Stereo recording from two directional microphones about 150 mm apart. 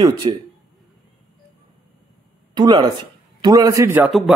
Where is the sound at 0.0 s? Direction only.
30° right (ahead or behind).